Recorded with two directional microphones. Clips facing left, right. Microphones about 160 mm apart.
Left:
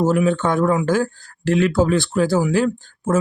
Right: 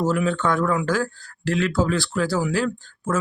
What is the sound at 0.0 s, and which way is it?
Speech, 20° left (ahead or behind).